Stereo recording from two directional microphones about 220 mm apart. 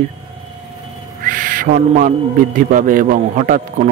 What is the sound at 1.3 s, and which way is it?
Speech, 40° right (ahead or behind).